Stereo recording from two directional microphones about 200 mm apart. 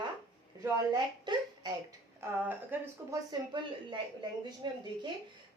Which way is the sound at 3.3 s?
25° right (ahead or behind).